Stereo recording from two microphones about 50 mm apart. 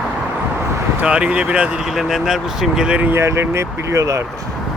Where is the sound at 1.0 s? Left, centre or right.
Right.